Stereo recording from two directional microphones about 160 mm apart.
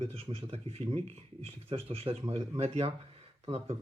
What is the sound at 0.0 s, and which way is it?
A man's voice, 40° right (ahead or behind).